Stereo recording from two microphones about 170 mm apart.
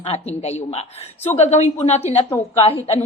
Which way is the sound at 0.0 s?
40° left (ahead or behind).